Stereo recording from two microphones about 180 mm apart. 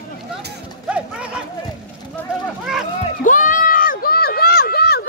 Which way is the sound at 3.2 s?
45° left (ahead or behind).